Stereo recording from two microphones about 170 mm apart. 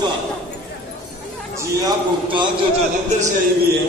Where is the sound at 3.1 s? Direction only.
45° right (ahead or behind).